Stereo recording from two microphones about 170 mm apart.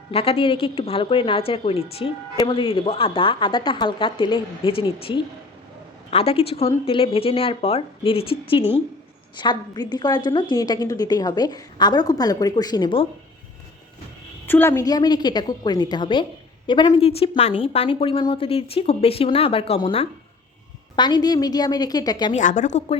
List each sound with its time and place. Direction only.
0.1 s a woman's voice: 35° left (ahead or behind)
14.4 s a woman's voice: 10° left (ahead or behind)
22.3 s speech: 45° left (ahead or behind)